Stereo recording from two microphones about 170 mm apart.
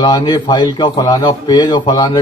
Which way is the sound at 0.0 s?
25° left (ahead or behind).